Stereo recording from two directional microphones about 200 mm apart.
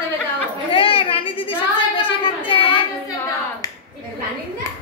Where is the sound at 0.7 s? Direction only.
25° left (ahead or behind).